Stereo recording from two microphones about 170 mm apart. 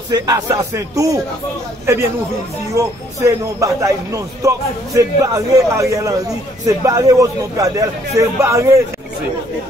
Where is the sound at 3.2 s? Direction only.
20° right (ahead or behind).